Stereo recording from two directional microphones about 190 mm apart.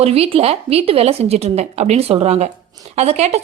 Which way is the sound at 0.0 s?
30° right (ahead or behind).